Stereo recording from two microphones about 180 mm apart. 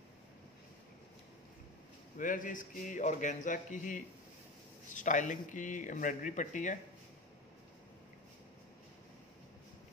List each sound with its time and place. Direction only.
2.1 s speech: 45° left (ahead or behind)